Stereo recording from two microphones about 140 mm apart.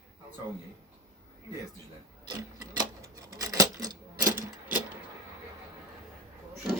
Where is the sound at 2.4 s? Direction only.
25° right (ahead or behind).